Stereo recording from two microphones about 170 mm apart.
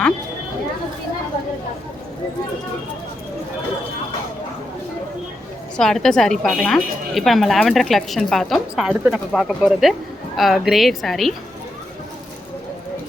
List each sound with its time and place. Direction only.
5.7 s a woman's voice: 5° left (ahead or behind)